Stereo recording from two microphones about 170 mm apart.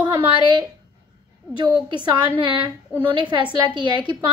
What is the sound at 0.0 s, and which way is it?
Speech, 30° right (ahead or behind).